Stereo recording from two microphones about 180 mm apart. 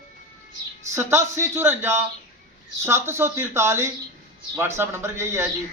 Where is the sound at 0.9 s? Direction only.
15° right (ahead or behind).